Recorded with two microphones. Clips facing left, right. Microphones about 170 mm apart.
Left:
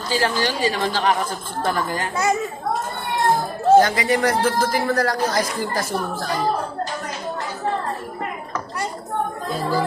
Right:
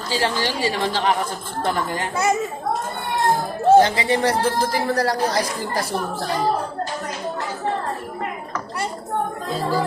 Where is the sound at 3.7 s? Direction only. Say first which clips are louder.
Left 1 dB; 25° right (ahead or behind).